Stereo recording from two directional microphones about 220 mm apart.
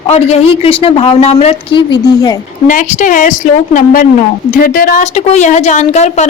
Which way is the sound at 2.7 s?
35° left (ahead or behind).